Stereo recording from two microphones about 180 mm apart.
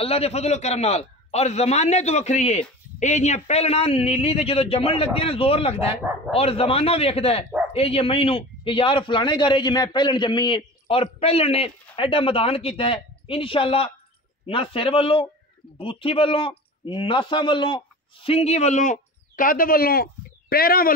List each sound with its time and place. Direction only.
0.0 s a man's voice: 35° left (ahead or behind); by 20.9 s 55° left (ahead or behind)